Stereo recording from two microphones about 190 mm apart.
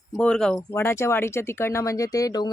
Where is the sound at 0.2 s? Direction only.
5° left (ahead or behind).